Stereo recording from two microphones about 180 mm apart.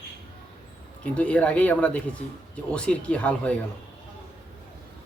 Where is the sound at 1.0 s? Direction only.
5° left (ahead or behind).